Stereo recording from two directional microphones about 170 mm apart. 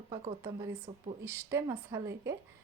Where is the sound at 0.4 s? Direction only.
20° right (ahead or behind).